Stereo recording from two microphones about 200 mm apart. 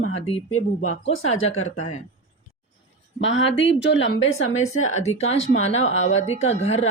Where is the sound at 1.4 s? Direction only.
90° left.